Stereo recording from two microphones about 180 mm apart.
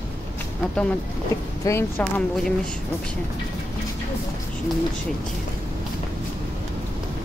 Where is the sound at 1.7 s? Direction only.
20° left (ahead or behind).